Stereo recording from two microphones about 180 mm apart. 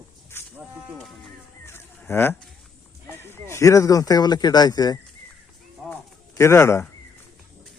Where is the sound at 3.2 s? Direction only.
15° left (ahead or behind).